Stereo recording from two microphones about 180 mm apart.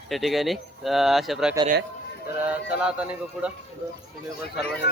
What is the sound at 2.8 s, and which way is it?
Speech, 5° right (ahead or behind).